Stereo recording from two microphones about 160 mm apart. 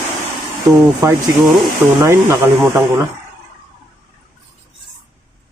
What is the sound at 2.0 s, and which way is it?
Speech, 15° right (ahead or behind).